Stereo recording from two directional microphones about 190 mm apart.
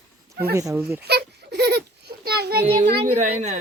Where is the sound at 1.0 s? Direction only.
60° right (ahead or behind).